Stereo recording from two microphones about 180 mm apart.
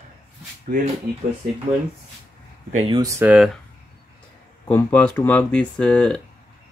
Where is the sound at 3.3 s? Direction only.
Centre (ahead or behind).